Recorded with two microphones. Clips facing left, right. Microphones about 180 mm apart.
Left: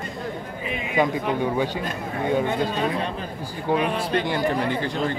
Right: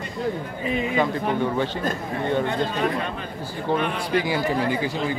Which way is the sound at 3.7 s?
15° left (ahead or behind).